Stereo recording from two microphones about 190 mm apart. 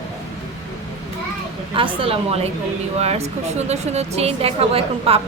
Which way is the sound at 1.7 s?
30° right (ahead or behind).